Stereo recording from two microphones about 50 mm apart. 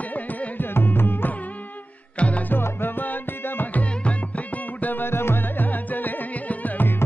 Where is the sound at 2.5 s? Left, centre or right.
Left.